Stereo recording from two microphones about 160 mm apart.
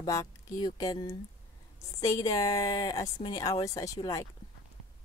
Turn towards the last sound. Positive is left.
turn(degrees=20)  # may be behind; listen again after turning